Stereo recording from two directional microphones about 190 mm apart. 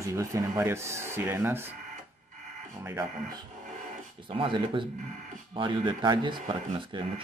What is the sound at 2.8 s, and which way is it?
Speech, 15° right (ahead or behind).